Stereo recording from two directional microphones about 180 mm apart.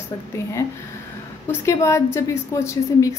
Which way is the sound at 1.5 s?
15° left (ahead or behind).